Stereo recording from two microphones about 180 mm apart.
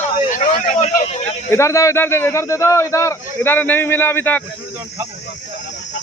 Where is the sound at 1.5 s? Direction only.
15° left (ahead or behind).